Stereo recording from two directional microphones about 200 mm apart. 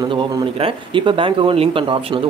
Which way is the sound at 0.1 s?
25° right (ahead or behind).